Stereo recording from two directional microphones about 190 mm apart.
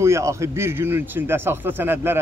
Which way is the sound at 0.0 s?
15° right (ahead or behind).